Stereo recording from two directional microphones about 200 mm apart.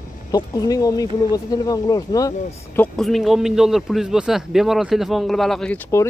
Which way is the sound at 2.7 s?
5° left (ahead or behind).